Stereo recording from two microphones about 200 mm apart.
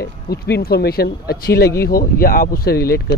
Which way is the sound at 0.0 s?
50° left (ahead or behind).